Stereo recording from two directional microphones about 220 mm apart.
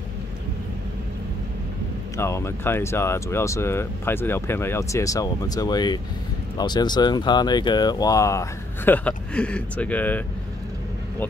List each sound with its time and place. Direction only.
2.1 s speech: 10° left (ahead or behind)